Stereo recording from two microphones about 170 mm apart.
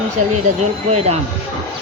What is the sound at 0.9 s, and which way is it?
Speech, 40° right (ahead or behind).